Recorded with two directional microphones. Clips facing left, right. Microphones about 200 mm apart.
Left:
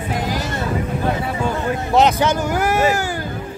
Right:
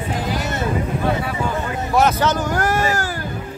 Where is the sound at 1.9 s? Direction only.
20° left (ahead or behind).